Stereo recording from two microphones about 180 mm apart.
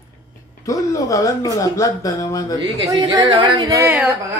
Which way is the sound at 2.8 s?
20° right (ahead or behind).